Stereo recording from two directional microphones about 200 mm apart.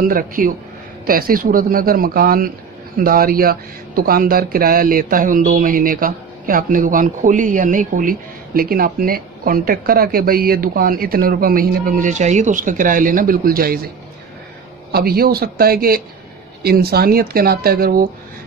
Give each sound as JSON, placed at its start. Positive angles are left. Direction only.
{"t": 0.1, "sound": "speech", "side_deg": -45}
{"t": 14.9, "sound": "speech", "side_deg": -50}